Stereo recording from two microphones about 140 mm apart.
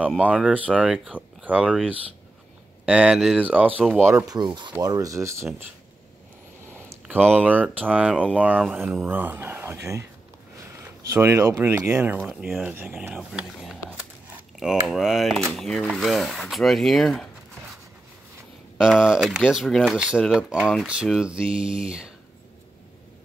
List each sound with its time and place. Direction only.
0.2 s speech: 10° right (ahead or behind)
4.0 s speech: 20° right (ahead or behind)
4.4 s speech: 30° right (ahead or behind)
6.9 s speech: 15° right (ahead or behind); by 17.3 s 5° left (ahead or behind)
18.8 s speech: 5° right (ahead or behind)